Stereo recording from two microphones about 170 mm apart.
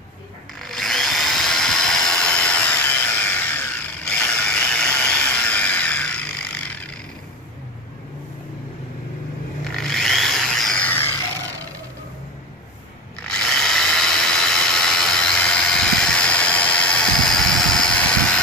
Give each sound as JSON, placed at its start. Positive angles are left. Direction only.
{"t": 0.6, "sound": "drill", "side_deg": 0}
{"t": 9.8, "sound": "a sound", "side_deg": 0}
{"t": 13.3, "sound": "tools", "side_deg": 5}